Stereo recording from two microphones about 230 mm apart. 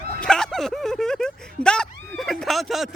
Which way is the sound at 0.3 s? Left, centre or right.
Centre.